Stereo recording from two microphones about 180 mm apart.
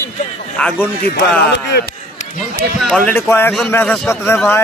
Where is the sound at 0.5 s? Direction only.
5° left (ahead or behind).